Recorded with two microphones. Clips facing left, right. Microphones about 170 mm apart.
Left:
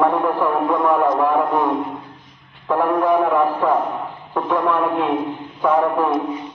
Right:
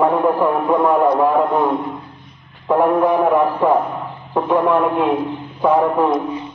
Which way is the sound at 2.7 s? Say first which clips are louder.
Right 3 dB; 20° right (ahead or behind).